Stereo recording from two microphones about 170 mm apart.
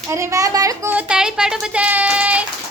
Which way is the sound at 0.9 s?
5° right (ahead or behind).